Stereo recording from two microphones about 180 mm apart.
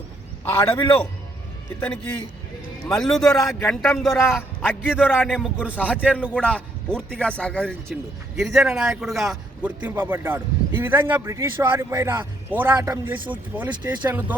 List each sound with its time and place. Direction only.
0.4 s a man's voice: 15° left (ahead or behind); by 5.7 s 5° right (ahead or behind)
6.3 s a man's voice: 5° left (ahead or behind); by 14.3 s 10° right (ahead or behind)